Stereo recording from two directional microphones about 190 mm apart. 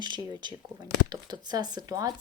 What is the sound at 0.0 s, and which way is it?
Speech, 25° right (ahead or behind).